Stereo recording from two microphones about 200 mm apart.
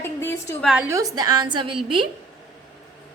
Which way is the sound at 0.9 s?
15° right (ahead or behind).